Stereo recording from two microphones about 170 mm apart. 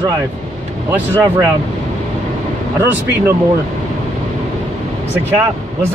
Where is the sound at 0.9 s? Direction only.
15° right (ahead or behind).